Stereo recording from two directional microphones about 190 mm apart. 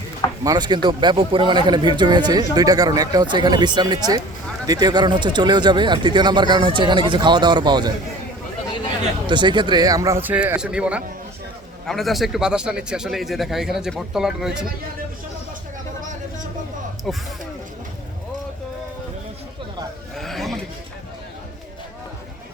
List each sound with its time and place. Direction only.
0.4 s speech: 20° right (ahead or behind)
9.2 s a man's voice: 25° right (ahead or behind); by 14.7 s 5° right (ahead or behind)
17.1 s a man's voice: centre (ahead or behind)
20.1 s a sound: centre (ahead or behind)